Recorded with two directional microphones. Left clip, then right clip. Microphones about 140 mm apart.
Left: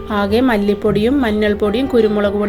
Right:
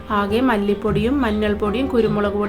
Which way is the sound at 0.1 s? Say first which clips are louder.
Left 3 dB; 30° left (ahead or behind).